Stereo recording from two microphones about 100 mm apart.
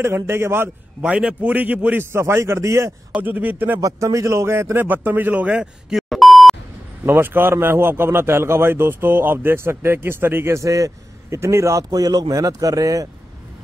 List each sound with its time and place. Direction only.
0.0 s a man's voice: 25° right (ahead or behind)
1.0 s a man's voice: 10° right (ahead or behind); by 2.9 s 30° right (ahead or behind)
3.1 s speech: 15° right (ahead or behind)
3.8 s a man's voice: 35° right (ahead or behind); by 6.5 s centre (ahead or behind)
7.1 s a man's voice: 20° right (ahead or behind); by 13.1 s 35° right (ahead or behind)